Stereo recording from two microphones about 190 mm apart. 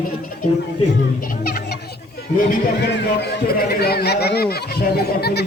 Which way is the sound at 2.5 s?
55° left (ahead or behind).